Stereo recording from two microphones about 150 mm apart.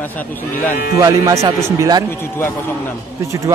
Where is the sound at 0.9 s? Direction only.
20° right (ahead or behind).